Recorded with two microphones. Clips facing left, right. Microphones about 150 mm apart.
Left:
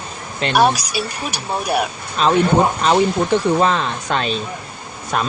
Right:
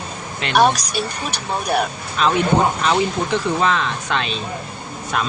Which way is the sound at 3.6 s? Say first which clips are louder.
Left 2 dB; 35° left (ahead or behind).